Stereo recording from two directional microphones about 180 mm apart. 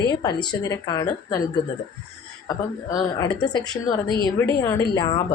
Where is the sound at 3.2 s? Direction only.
20° left (ahead or behind).